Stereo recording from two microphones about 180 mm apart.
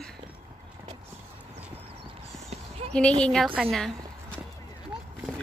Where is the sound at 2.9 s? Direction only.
5° left (ahead or behind).